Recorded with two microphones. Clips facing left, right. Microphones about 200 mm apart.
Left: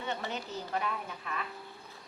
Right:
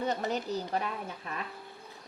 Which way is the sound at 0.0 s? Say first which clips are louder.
Right 6 dB; 40° right (ahead or behind).